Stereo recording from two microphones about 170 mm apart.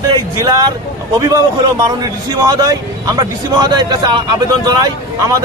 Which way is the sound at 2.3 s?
20° right (ahead or behind).